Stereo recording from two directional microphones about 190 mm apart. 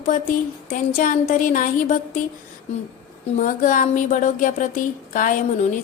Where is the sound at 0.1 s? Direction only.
45° left (ahead or behind).